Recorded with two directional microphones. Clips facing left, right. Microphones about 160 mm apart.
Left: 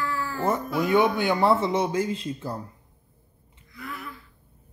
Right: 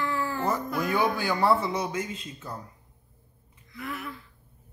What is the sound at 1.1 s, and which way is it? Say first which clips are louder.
Speech: left 3 dB; 20° left (ahead or behind).